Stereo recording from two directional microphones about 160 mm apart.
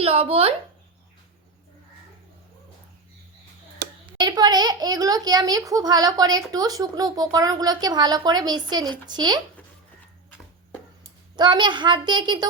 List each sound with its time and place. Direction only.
0.0 s speech: 35° right (ahead or behind)
4.2 s a child's voice: 25° right (ahead or behind)
11.3 s a child's voice: 30° right (ahead or behind)